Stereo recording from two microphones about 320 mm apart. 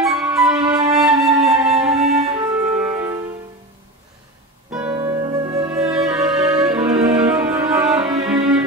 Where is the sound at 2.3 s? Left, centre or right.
Centre.